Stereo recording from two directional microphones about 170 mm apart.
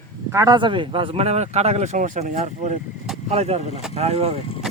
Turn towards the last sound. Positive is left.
turn(degrees=-35)  # may be behind; listen again after turning